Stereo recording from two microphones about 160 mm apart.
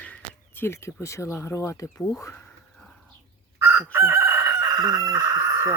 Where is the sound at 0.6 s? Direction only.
15° left (ahead or behind).